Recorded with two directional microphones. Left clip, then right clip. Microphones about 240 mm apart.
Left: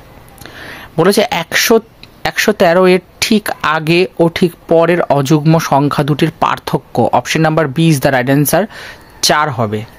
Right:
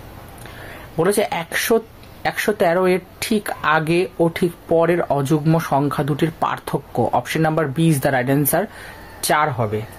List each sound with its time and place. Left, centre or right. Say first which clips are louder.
0.9 s speech: left 7 dB; left